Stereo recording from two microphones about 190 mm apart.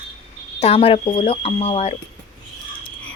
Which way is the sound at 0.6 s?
30° left (ahead or behind).